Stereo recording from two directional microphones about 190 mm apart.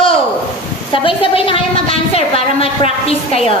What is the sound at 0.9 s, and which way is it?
A woman's voice, 30° left (ahead or behind).